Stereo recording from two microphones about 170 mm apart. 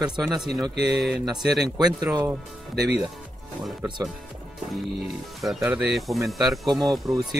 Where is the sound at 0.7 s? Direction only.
80° right.